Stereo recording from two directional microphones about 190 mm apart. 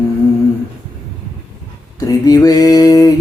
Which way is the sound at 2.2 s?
20° left (ahead or behind).